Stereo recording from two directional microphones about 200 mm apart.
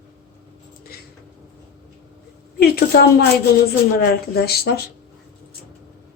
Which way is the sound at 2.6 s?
50° left (ahead or behind).